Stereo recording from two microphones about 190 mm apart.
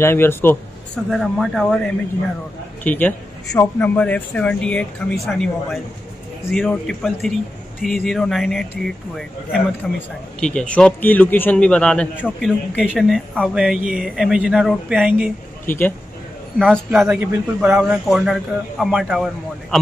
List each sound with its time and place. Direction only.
0.0 s a man's voice: 10° left (ahead or behind)
1.1 s speech: centre (ahead or behind)
2.8 s a man's voice: 10° left (ahead or behind)
15.6 s speech: 10° left (ahead or behind)